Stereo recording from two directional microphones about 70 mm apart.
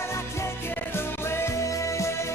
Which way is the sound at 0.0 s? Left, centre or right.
Left.